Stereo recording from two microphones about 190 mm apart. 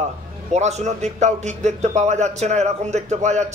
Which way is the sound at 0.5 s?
35° right (ahead or behind).